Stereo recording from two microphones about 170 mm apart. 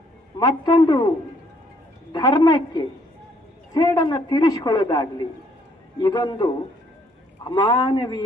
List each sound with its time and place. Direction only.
0.3 s a man's voice: 25° left (ahead or behind)
2.1 s a man's voice: 20° left (ahead or behind)